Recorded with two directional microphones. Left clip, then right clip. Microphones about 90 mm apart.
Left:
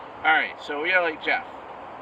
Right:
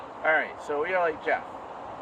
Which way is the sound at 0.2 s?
45° right (ahead or behind).